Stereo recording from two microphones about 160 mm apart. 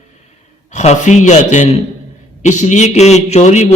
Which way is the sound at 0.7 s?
45° left (ahead or behind).